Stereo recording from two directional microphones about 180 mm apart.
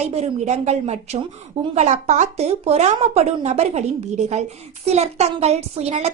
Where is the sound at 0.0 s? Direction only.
35° right (ahead or behind).